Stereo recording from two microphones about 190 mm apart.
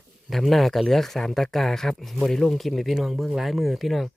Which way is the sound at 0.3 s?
Centre (ahead or behind).